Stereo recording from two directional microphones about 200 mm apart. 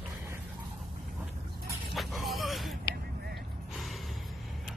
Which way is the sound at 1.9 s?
Centre (ahead or behind).